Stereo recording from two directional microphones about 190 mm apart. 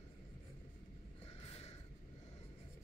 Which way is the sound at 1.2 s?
35° left (ahead or behind).